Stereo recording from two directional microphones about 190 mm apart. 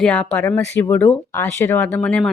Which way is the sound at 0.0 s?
5° left (ahead or behind).